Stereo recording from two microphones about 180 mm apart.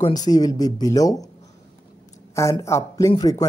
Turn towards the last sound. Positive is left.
turn(degrees=20)  # may be behind; listen again after turning